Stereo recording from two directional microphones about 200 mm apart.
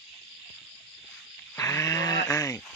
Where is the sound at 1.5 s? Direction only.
15° left (ahead or behind).